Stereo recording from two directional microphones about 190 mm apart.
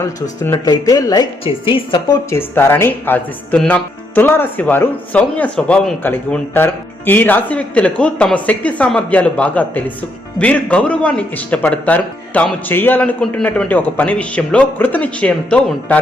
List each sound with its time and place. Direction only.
0.4 s a woman's voice: 20° left (ahead or behind)
2.3 s speech: 10° left (ahead or behind)